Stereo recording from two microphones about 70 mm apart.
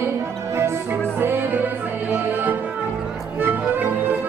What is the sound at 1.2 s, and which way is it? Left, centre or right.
Music, right.